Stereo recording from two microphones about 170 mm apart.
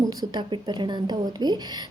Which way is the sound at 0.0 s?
25° right (ahead or behind).